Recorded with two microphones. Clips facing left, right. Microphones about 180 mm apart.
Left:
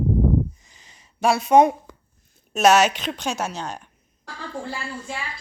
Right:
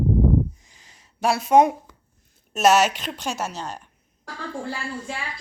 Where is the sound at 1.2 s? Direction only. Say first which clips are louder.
Left 1 dB; 5° right (ahead or behind).